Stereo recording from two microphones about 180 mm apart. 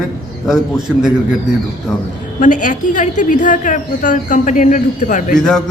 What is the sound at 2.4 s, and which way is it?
A woman's voice, 45° left (ahead or behind).